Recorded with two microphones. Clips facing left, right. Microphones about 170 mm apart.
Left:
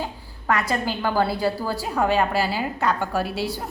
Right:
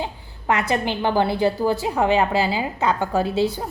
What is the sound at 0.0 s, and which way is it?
A woman's voice, 20° right (ahead or behind).